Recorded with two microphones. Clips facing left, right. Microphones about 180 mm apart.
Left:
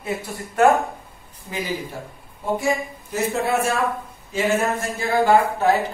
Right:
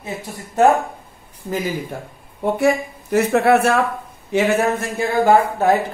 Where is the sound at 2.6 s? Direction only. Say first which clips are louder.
Right 6 dB; 70° right (ahead or behind).